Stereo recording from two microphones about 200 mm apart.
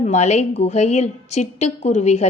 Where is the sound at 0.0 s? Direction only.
35° left (ahead or behind).